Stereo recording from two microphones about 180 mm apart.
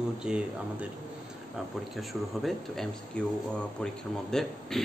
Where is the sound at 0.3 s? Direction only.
5° right (ahead or behind).